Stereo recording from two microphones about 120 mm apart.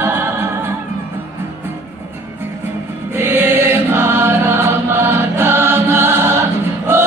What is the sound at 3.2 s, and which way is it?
Choir, 20° right (ahead or behind).